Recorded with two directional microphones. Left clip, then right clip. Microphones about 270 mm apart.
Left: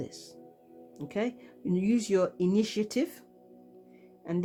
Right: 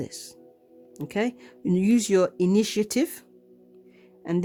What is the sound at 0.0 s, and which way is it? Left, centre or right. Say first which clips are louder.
Speech: right 5 dB; right.